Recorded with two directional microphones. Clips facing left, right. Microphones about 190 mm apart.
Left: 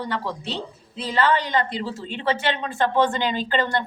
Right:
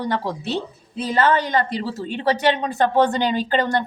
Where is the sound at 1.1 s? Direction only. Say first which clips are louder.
Right 2 dB; 45° right (ahead or behind).